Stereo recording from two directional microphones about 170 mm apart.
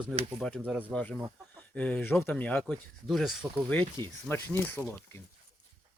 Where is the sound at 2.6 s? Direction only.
Centre (ahead or behind).